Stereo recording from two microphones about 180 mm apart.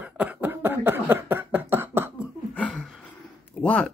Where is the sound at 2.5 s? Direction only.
5° left (ahead or behind).